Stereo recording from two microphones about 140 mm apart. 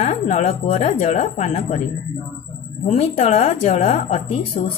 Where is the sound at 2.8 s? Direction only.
50° left (ahead or behind).